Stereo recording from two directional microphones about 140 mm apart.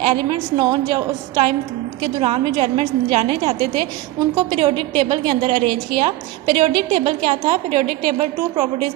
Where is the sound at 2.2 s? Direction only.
40° right (ahead or behind).